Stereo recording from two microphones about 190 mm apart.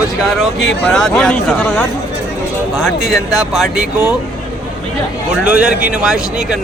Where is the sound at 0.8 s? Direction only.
5° left (ahead or behind).